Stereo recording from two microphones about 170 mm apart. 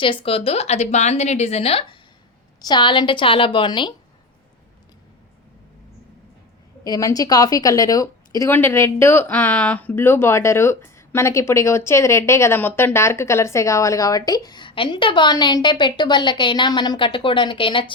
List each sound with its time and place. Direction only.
0.0 s a woman's voice: 30° left (ahead or behind)
6.8 s a woman's voice: 20° left (ahead or behind)